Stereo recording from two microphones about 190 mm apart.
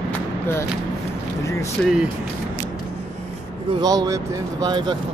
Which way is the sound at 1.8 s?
Centre (ahead or behind).